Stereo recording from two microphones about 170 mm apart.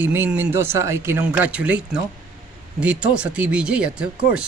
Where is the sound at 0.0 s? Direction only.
10° right (ahead or behind).